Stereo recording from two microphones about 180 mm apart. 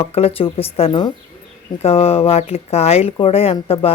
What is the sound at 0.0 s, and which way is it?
Speech, 35° left (ahead or behind).